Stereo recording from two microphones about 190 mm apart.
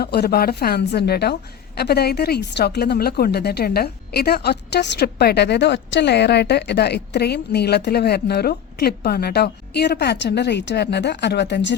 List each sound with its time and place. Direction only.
0.0 s a woman's voice: 55° left (ahead or behind)